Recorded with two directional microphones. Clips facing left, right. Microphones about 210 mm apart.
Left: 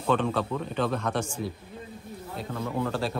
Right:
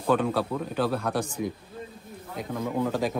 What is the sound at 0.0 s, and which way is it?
A man's voice, 5° right (ahead or behind).